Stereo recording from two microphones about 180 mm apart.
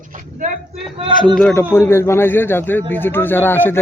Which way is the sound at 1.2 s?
5° left (ahead or behind).